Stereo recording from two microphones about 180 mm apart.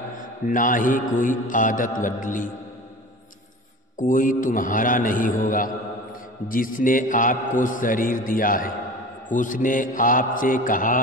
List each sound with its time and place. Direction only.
0.2 s a man's voice: 50° left (ahead or behind)
4.1 s a man's voice: 50° left (ahead or behind)